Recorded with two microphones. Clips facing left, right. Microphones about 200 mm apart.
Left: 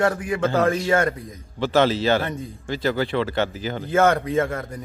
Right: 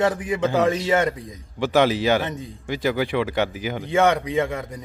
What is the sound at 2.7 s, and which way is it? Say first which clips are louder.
A man's voice: even; 15° right (ahead or behind).